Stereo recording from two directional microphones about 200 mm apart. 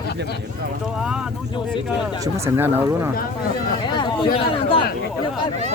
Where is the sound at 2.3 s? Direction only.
15° right (ahead or behind).